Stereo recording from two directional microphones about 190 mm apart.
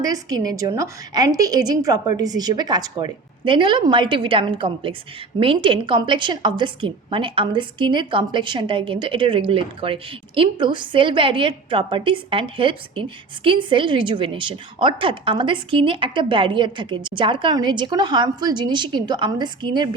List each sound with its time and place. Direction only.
0.0 s a woman's voice: 20° right (ahead or behind)